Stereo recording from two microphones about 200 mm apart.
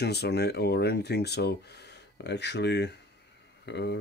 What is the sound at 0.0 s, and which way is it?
Speech, 55° left (ahead or behind).